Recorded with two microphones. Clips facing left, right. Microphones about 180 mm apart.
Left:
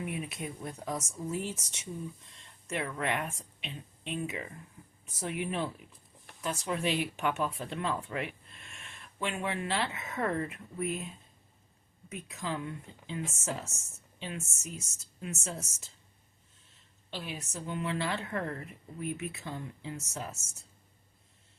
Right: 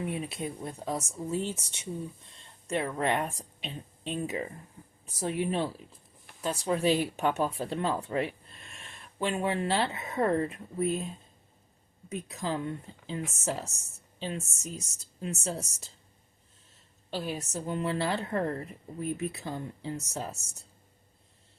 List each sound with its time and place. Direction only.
0.0 s a woman's voice: 30° right (ahead or behind)
17.1 s speech: 40° right (ahead or behind)